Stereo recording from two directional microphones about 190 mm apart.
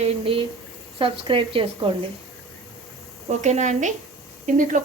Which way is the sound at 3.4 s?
40° right (ahead or behind).